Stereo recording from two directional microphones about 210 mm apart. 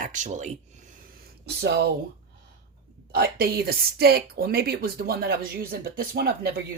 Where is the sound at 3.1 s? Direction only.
45° right (ahead or behind).